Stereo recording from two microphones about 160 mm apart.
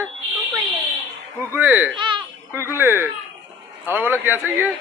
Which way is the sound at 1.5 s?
10° right (ahead or behind).